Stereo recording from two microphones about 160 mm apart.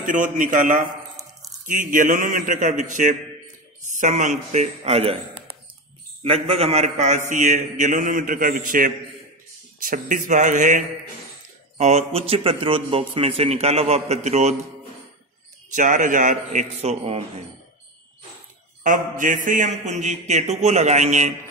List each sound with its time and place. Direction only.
0.0 s a man's voice: 55° right (ahead or behind); by 5.1 s 40° right (ahead or behind)
6.2 s a man's voice: 40° right (ahead or behind)
11.8 s a man's voice: 40° right (ahead or behind)
15.7 s a man's voice: 55° right (ahead or behind)
18.8 s a man's voice: 55° right (ahead or behind)